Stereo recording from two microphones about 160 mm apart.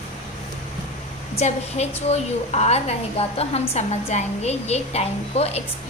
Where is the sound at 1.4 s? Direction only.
45° left (ahead or behind).